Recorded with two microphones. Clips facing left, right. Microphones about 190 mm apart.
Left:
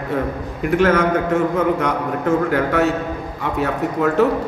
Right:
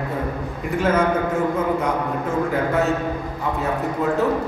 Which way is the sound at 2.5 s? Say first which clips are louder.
Left 3 dB; 80° left.